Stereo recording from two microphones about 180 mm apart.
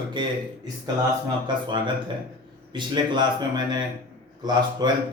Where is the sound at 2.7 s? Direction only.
25° right (ahead or behind).